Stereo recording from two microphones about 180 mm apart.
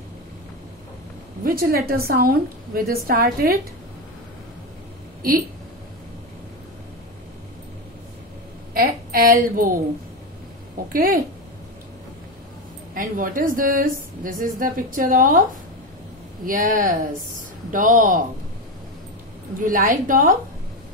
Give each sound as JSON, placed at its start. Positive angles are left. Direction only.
{"t": 1.4, "sound": "a woman's voice", "side_deg": -55}
{"t": 8.7, "sound": "a sound", "side_deg": -55}
{"t": 9.4, "sound": "a woman's voice", "side_deg": -50}
{"t": 10.9, "sound": "a woman's voice", "side_deg": -50}
{"t": 12.9, "sound": "a woman's voice", "side_deg": -50}
{"t": 16.4, "sound": "a woman's voice", "side_deg": -50}
{"t": 19.6, "sound": "a woman's voice", "side_deg": -50}